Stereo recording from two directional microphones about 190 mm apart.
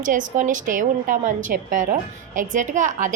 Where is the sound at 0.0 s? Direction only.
45° right (ahead or behind).